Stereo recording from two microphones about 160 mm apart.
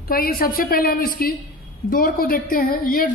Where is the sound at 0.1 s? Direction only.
70° left (ahead or behind).